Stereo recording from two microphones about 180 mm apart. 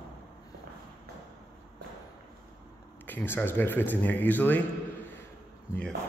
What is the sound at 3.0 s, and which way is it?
Speech, 10° left (ahead or behind).